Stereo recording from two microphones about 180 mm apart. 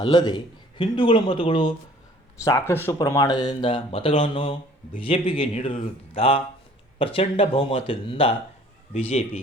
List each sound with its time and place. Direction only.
0.0 s a man's voice: 20° left (ahead or behind)